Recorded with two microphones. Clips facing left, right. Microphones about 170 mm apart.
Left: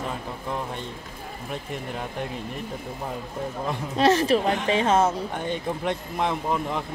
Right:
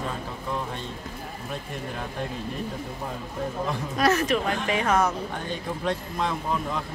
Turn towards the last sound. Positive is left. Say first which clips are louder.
# left 2 dB
turn(degrees=20)  # may be behind; listen again after turning